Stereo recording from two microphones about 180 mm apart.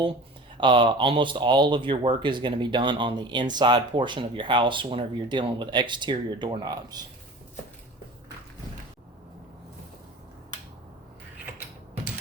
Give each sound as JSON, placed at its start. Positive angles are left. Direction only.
{"t": 0.6, "sound": "speech", "side_deg": -25}